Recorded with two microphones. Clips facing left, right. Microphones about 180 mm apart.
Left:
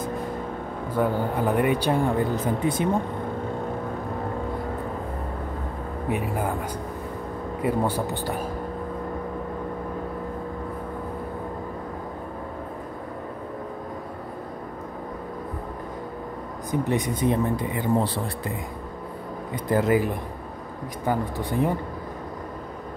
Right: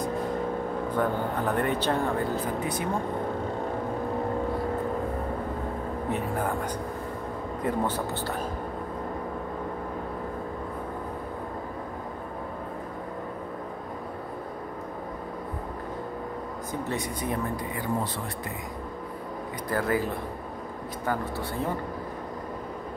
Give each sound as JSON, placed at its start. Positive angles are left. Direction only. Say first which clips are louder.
{"t": 0.9, "sound": "speech", "louder": "left 5 dB", "side_deg": 10}
{"t": 2.4, "sound": "speech", "louder": "left 5 dB", "side_deg": 25}
{"t": 6.0, "sound": "speech", "louder": "left 3 dB", "side_deg": 10}
{"t": 7.6, "sound": "speech", "louder": "left 4 dB", "side_deg": 10}
{"t": 16.8, "sound": "speech", "louder": "left 8 dB", "side_deg": 20}
{"t": 19.7, "sound": "speech", "louder": "left 6 dB", "side_deg": 20}